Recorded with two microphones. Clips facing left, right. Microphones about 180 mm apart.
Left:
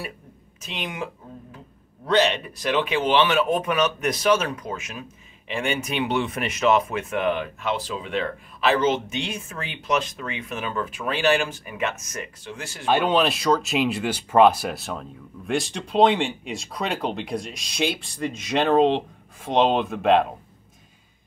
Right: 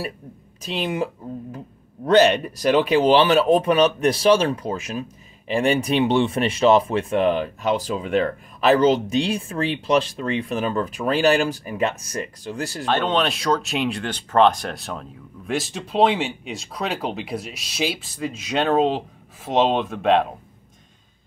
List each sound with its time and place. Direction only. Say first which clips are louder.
0.6 s speech: right 7 dB; 35° right (ahead or behind)
12.8 s speech: left 1 dB; 10° left (ahead or behind)